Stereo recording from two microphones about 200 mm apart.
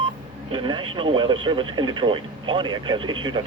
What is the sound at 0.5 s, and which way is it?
Speech, 25° right (ahead or behind).